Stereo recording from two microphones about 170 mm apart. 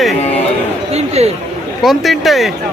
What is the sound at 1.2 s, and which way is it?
Speech, 40° right (ahead or behind).